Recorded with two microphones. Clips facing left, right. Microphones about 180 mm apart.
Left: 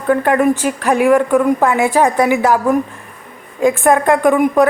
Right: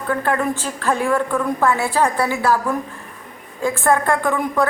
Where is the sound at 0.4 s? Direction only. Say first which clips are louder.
Left 7 dB; 15° left (ahead or behind).